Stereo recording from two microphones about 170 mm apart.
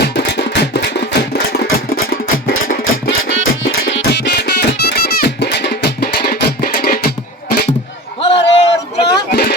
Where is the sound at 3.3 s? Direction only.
75° left (ahead or behind).